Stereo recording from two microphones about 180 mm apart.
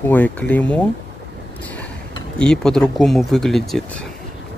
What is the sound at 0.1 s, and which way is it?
Speech, 10° left (ahead or behind).